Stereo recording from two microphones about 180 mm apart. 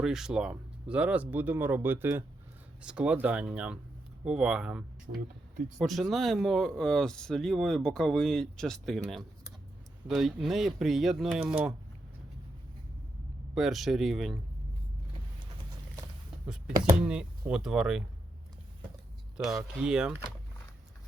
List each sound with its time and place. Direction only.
0.0 s speech: 5° right (ahead or behind)
5.1 s speech: 50° right (ahead or behind)
5.8 s speech: centre (ahead or behind)
13.5 s speech: centre (ahead or behind)
17.0 s speech: 5° right (ahead or behind)
19.4 s speech: centre (ahead or behind)